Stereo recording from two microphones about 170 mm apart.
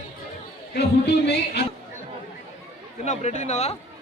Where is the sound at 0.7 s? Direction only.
80° left.